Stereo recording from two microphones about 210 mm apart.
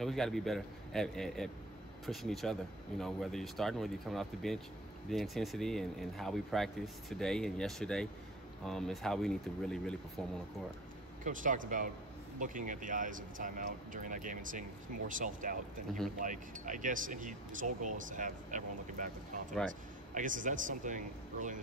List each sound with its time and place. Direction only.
0.0 s speech: centre (ahead or behind)
11.2 s speech: 40° right (ahead or behind)
20.2 s speech: 40° right (ahead or behind)